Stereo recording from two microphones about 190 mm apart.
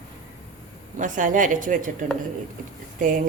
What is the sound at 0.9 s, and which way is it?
A woman's voice, 40° right (ahead or behind).